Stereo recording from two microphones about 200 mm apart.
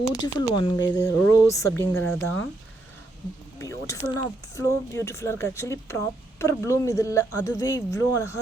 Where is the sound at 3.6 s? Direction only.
15° left (ahead or behind).